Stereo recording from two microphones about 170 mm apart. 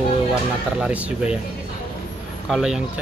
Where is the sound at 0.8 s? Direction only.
5° right (ahead or behind).